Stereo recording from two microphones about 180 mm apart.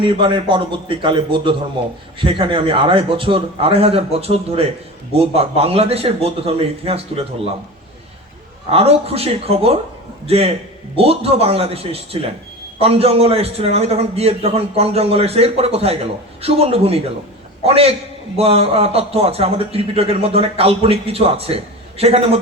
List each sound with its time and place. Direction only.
0.0 s a man's voice: 30° right (ahead or behind)
8.7 s a man's voice: 35° right (ahead or behind)